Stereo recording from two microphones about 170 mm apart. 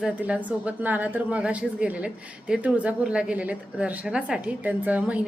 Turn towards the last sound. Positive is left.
turn(degrees=-10)  # may be behind; listen again after turning